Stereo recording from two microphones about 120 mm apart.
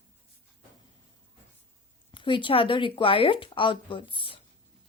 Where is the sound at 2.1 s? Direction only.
45° left (ahead or behind).